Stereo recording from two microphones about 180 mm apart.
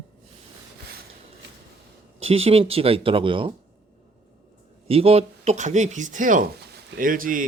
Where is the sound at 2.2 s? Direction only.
35° right (ahead or behind).